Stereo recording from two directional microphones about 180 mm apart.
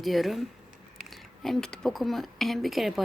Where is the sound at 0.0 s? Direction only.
Centre (ahead or behind).